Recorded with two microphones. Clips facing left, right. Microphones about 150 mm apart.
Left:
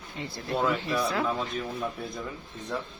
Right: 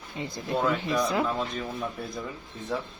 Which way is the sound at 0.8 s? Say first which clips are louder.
Right 2 dB; 15° right (ahead or behind).